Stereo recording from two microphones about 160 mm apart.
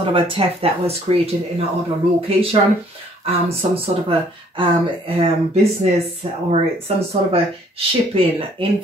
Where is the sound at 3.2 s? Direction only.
35° right (ahead or behind).